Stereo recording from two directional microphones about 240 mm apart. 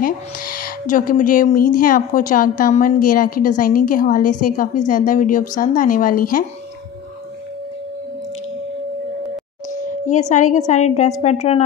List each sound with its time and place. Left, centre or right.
0.0 s speech: left
10.0 s a woman's voice: left